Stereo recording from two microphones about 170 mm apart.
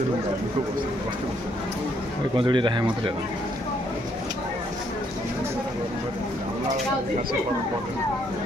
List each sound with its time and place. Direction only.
2.3 s speech: 30° right (ahead or behind)